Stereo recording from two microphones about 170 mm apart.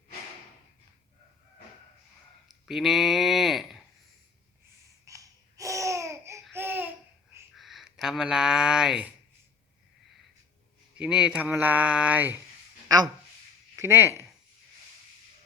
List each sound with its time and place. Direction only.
2.6 s speech: centre (ahead or behind)
5.0 s babbling: 20° right (ahead or behind)
6.5 s laughter: 10° right (ahead or behind)
7.5 s speech: centre (ahead or behind)
10.9 s speech: 5° right (ahead or behind)
13.7 s speech: 15° right (ahead or behind)